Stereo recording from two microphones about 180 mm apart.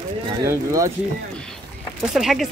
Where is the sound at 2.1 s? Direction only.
Centre (ahead or behind).